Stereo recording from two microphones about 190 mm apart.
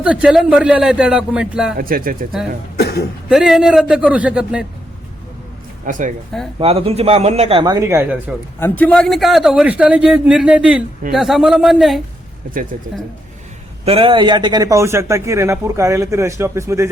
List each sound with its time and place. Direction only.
0.0 s a man's voice: 5° right (ahead or behind)
1.8 s speech: 50° right (ahead or behind)
2.7 s cough: 60° left (ahead or behind)
3.2 s a man's voice: centre (ahead or behind)
5.8 s speech: 45° right (ahead or behind)
6.6 s speech: 30° right (ahead or behind)
7.6 s speech: 20° right (ahead or behind)
8.5 s a man's voice: 10° left (ahead or behind)
13.8 s speech: 30° right (ahead or behind); by 16.9 s 15° right (ahead or behind)